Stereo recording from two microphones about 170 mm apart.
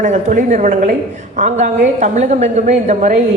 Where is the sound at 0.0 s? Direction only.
45° right (ahead or behind).